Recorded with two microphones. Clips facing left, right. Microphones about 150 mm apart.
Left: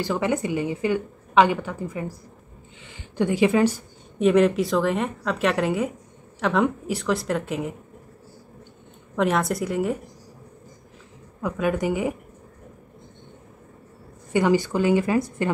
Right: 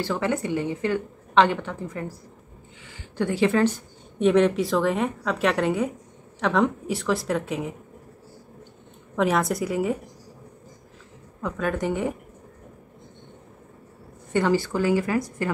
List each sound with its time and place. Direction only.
0.0 s a woman's voice: 15° left (ahead or behind)
4.2 s a woman's voice: centre (ahead or behind)
9.1 s a woman's voice: centre (ahead or behind)
11.4 s a woman's voice: 10° left (ahead or behind)
14.3 s speech: 15° left (ahead or behind)